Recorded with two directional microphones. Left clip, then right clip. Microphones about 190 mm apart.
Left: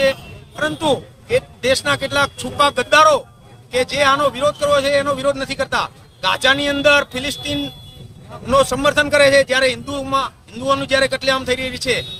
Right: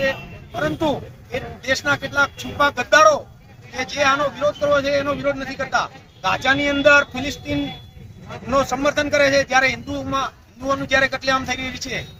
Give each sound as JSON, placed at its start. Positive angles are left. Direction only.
{"t": 0.6, "sound": "speech", "side_deg": 25}